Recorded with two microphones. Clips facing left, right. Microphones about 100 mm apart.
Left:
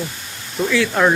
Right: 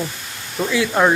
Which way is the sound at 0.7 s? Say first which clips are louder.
Even; 15° right (ahead or behind).